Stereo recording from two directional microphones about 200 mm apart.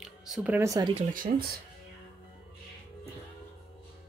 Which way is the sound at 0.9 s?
45° right (ahead or behind).